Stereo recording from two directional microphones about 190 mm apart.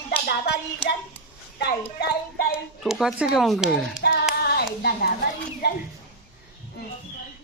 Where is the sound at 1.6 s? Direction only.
60° left (ahead or behind).